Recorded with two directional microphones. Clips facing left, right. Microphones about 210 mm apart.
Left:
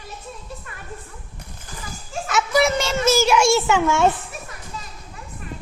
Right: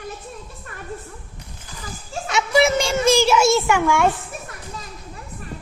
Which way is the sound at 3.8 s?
20° left (ahead or behind).